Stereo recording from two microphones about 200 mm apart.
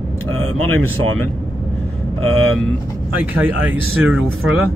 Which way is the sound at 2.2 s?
90° right.